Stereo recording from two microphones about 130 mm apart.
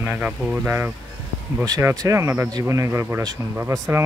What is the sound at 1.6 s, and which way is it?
Speech, 25° right (ahead or behind).